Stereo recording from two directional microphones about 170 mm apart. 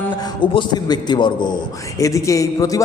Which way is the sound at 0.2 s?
25° left (ahead or behind).